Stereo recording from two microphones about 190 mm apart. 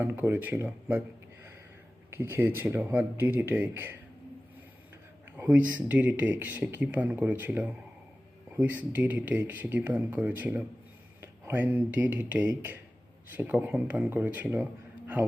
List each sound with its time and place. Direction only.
0.0 s speech: 10° right (ahead or behind)
2.0 s speech: 10° right (ahead or behind)
5.4 s speech: 5° right (ahead or behind)